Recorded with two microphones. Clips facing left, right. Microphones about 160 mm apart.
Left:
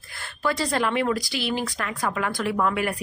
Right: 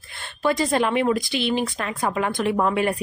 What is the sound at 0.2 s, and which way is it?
Speech, 20° right (ahead or behind).